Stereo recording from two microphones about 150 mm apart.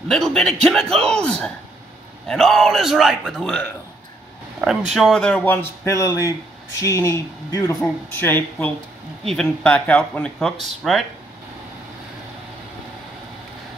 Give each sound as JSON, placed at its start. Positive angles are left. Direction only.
{"t": 0.1, "sound": "a man's voice", "side_deg": 5}